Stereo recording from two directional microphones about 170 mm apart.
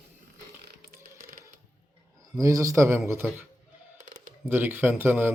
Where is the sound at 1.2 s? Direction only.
55° right (ahead or behind).